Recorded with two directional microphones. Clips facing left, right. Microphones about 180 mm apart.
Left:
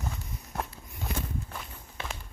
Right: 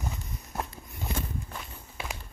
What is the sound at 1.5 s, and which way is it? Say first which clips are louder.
Walk: even; centre (ahead or behind).